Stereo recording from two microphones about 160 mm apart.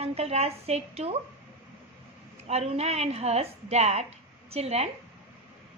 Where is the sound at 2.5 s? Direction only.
40° right (ahead or behind).